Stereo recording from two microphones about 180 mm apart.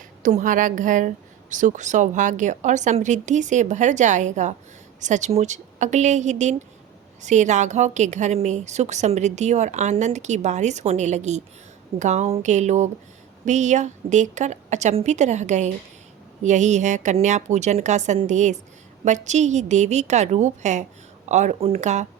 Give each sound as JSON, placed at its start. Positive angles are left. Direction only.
{"t": 0.2, "sound": "a woman's voice", "side_deg": -45}